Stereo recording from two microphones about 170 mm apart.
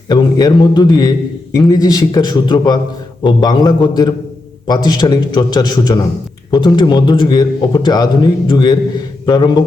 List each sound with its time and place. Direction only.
0.1 s a man's voice: 25° left (ahead or behind)